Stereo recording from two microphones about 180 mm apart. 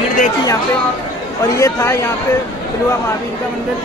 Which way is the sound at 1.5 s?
15° left (ahead or behind).